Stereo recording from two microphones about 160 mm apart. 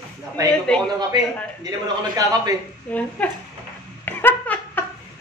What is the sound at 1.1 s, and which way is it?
Speech, 25° right (ahead or behind).